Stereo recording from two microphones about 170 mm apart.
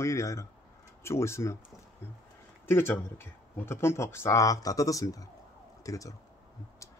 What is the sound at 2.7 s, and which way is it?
Speech, 15° left (ahead or behind).